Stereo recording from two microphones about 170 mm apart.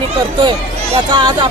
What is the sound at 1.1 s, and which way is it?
Speech, 25° right (ahead or behind).